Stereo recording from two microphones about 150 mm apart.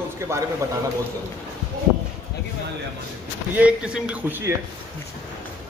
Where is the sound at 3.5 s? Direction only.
5° right (ahead or behind).